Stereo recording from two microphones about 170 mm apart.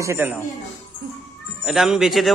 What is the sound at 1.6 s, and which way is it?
Speech, 5° right (ahead or behind).